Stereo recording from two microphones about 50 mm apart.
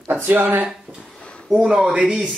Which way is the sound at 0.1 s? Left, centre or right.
Right.